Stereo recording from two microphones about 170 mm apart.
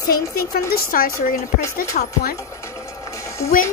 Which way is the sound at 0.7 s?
60° left (ahead or behind).